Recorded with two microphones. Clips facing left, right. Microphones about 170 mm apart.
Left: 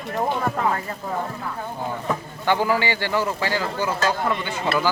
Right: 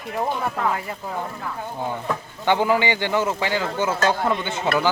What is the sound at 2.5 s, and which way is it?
Speech, 20° right (ahead or behind).